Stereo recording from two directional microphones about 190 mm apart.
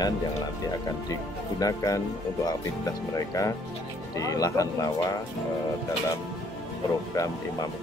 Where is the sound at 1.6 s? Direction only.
20° left (ahead or behind).